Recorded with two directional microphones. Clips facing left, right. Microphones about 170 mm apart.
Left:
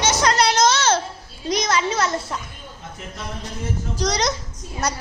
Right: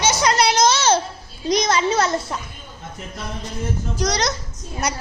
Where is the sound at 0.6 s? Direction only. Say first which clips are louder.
Right 1 dB; 5° right (ahead or behind).